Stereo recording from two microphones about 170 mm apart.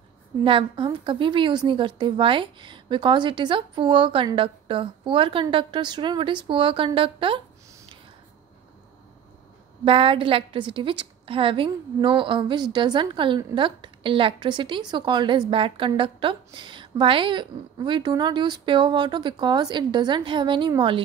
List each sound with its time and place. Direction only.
0.4 s a woman's voice: 30° right (ahead or behind)
9.8 s a woman's voice: 30° right (ahead or behind)